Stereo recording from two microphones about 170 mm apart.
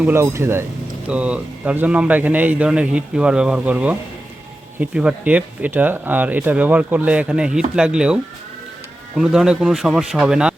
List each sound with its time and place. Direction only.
0.0 s a man's voice: 15° right (ahead or behind)